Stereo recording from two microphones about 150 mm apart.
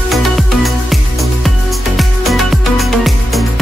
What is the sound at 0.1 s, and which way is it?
Music, centre (ahead or behind).